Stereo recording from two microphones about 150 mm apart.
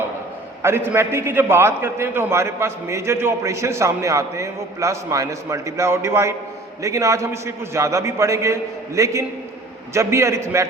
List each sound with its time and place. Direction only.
0.6 s a man's voice: 15° right (ahead or behind)